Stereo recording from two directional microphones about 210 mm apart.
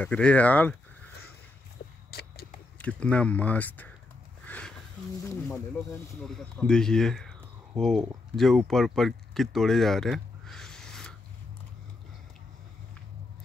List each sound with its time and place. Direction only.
0.0 s speech: 5° left (ahead or behind)
2.0 s a sound: 45° left (ahead or behind)
2.8 s speech: 5° left (ahead or behind)
4.5 s a sound: 5° left (ahead or behind)
5.2 s speech: 15° left (ahead or behind)
6.2 s speech: 5° left (ahead or behind)